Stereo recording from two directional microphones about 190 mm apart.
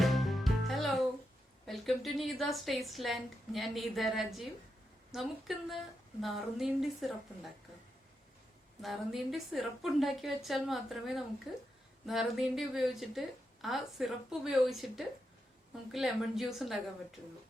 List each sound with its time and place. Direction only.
0.0 s music: centre (ahead or behind)
1.6 s a woman's voice: centre (ahead or behind)
8.8 s a woman's voice: centre (ahead or behind)